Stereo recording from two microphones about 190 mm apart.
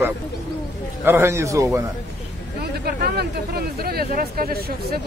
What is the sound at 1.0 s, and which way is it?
Speech, 10° right (ahead or behind).